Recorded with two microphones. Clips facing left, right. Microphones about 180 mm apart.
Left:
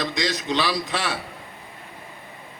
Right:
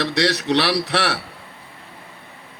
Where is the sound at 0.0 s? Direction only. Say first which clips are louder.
Right 5 dB; 70° right (ahead or behind).